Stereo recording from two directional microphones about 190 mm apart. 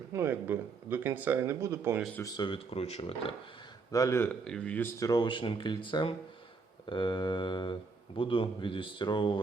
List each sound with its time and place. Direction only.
0.1 s speech: 10° right (ahead or behind)
2.1 s speech: 20° left (ahead or behind)
3.9 s speech: 15° left (ahead or behind)